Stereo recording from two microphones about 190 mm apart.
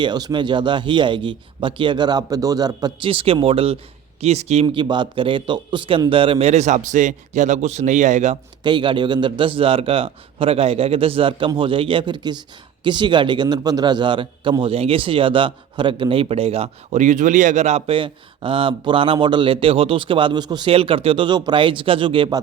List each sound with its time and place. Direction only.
0.0 s a man's voice: 20° right (ahead or behind); by 8.4 s 40° right (ahead or behind)
8.6 s a man's voice: 25° right (ahead or behind)